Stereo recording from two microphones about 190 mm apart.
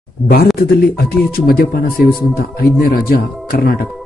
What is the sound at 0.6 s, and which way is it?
Speech, 55° left (ahead or behind).